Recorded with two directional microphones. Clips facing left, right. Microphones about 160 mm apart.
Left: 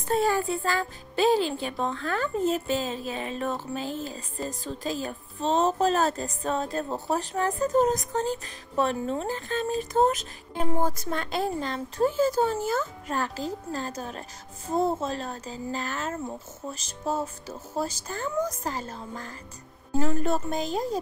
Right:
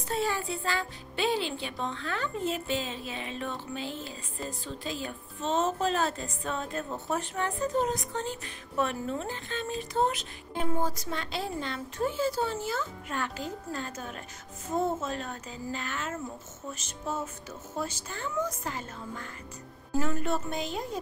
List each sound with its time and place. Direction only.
0.1 s speech: 45° left (ahead or behind)